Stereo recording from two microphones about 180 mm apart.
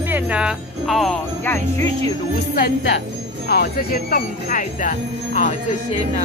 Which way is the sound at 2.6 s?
65° left (ahead or behind).